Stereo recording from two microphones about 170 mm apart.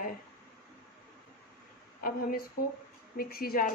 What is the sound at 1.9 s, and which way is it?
A woman's voice, 55° left (ahead or behind).